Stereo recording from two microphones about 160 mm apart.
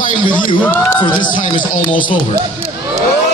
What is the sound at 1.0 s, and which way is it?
Speech, 30° left (ahead or behind).